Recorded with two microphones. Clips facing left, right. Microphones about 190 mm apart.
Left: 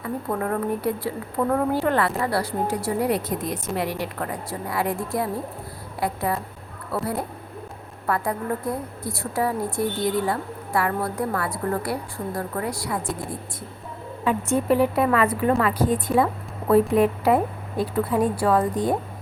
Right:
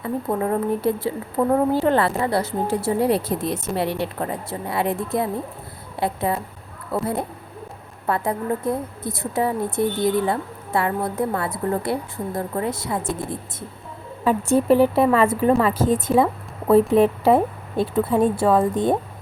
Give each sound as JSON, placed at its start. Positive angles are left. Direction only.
{"t": 0.0, "sound": "a woman's voice", "side_deg": -20}
{"t": 14.3, "sound": "a woman's voice", "side_deg": -30}